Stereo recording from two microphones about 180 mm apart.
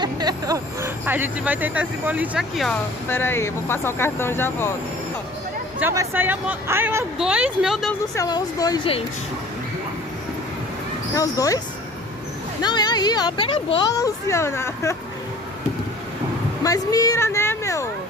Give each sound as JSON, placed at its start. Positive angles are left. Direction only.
{"t": 0.0, "sound": "speech", "side_deg": -20}
{"t": 3.1, "sound": "speech", "side_deg": 10}
{"t": 5.8, "sound": "speech", "side_deg": -10}
{"t": 7.9, "sound": "speech", "side_deg": 20}
{"t": 11.1, "sound": "speech", "side_deg": 20}
{"t": 12.6, "sound": "speech", "side_deg": 25}
{"t": 16.6, "sound": "a sound", "side_deg": 20}